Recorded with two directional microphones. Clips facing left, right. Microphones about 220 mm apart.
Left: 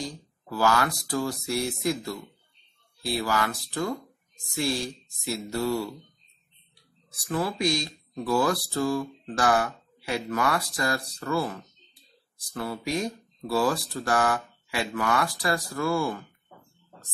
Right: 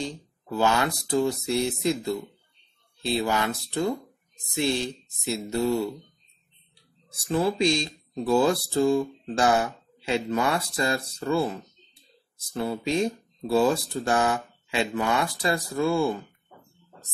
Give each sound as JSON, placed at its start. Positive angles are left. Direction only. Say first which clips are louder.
{"t": 0.0, "sound": "speech", "louder": "right 3 dB", "side_deg": -25}
{"t": 7.1, "sound": "speech", "louder": "right 4 dB", "side_deg": -25}